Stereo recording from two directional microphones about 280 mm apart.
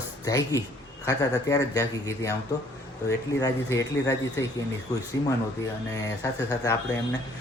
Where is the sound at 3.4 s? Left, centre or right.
Centre.